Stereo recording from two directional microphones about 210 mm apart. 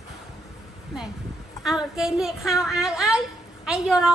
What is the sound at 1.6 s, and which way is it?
A woman's voice, centre (ahead or behind).